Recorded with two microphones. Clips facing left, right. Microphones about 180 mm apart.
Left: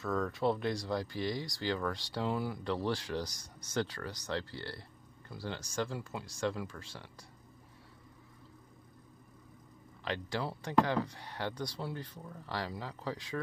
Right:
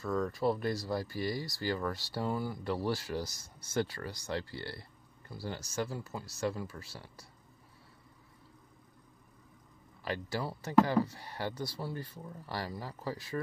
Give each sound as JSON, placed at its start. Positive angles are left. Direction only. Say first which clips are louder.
{"t": 0.0, "sound": "speech", "louder": "right 1 dB", "side_deg": 0}
{"t": 10.0, "sound": "speech", "louder": "even", "side_deg": -5}